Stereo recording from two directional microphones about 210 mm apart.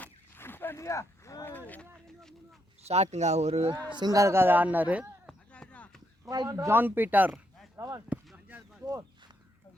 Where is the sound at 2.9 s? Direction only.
30° right (ahead or behind).